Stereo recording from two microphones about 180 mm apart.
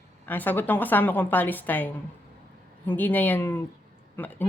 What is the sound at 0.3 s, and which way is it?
Speech, 10° left (ahead or behind).